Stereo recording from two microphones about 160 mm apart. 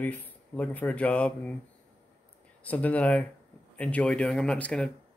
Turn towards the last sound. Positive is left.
turn(degrees=5)  # may be behind; listen again after turning